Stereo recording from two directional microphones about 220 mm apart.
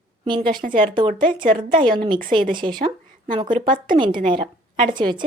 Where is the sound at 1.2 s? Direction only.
35° right (ahead or behind).